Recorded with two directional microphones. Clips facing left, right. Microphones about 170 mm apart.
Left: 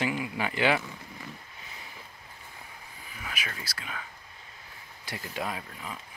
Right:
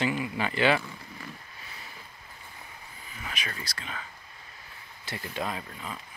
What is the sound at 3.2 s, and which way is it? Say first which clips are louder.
Speech: right 1 dB; 5° left (ahead or behind).